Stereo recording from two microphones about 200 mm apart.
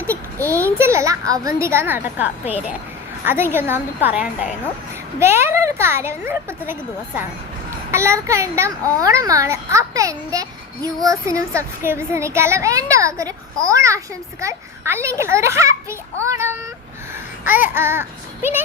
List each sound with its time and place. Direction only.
0.8 s a child's voice: 15° right (ahead or behind)
7.9 s a child's voice: 15° right (ahead or behind)